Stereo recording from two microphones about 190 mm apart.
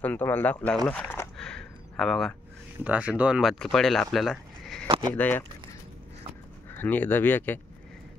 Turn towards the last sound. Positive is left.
turn(degrees=10)  # may be behind; listen again after turning